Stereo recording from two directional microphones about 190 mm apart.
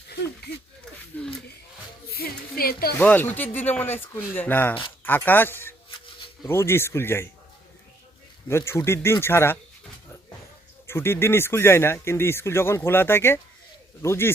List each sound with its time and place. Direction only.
1.1 s speech: 10° left (ahead or behind)
2.1 s music: 50° left (ahead or behind)
3.0 s speech: 10° left (ahead or behind)
8.4 s speech: 15° left (ahead or behind)
10.8 s speech: 10° left (ahead or behind)